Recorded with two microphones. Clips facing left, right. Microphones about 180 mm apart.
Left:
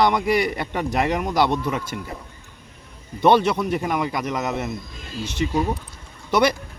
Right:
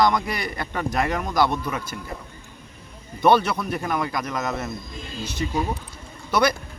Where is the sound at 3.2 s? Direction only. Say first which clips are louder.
Left 2 dB; 20° left (ahead or behind).